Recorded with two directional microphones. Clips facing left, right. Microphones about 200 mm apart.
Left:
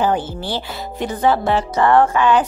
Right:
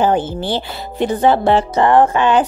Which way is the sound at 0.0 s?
25° right (ahead or behind).